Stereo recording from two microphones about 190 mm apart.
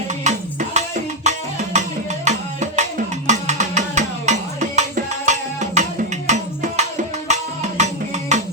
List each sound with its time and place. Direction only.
0.3 s music: 40° right (ahead or behind)